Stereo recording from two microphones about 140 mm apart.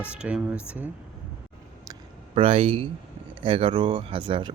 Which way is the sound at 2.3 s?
40° right (ahead or behind).